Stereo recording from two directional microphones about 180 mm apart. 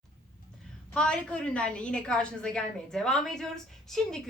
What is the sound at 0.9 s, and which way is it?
A woman's voice, 5° left (ahead or behind).